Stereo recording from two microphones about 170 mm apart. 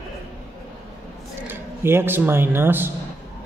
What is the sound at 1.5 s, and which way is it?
Speech, 15° right (ahead or behind).